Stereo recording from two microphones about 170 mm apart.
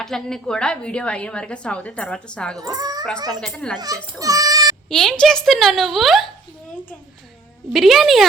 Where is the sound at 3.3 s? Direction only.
5° left (ahead or behind).